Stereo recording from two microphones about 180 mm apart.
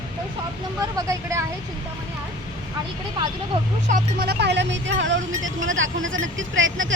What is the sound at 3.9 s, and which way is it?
Speech, 60° right (ahead or behind).